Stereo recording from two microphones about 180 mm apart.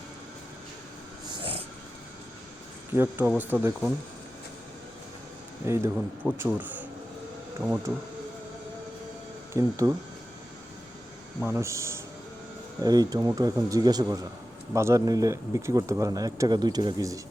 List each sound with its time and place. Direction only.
1.3 s dog: 30° right (ahead or behind)
2.9 s speech: 10° right (ahead or behind)
5.6 s speech: 15° right (ahead or behind)
9.5 s speech: 15° right (ahead or behind)
11.4 s speech: 15° right (ahead or behind)